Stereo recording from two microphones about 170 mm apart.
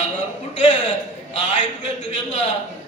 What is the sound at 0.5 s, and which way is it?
A man's voice, 45° left (ahead or behind).